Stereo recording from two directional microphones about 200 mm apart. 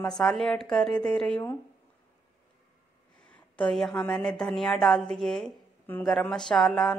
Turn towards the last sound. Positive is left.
turn(degrees=0)  # may be behind; listen again after turning